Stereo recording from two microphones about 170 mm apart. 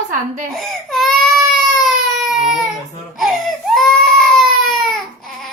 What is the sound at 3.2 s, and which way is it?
Baby cry, centre (ahead or behind).